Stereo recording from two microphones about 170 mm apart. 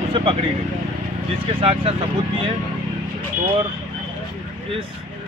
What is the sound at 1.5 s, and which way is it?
Speech, 35° right (ahead or behind).